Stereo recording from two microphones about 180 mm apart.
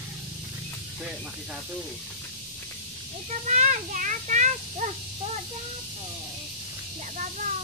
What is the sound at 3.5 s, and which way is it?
A child's voice, 40° right (ahead or behind).